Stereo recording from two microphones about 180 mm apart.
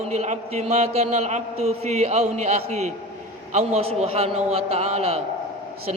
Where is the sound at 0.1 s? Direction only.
40° right (ahead or behind).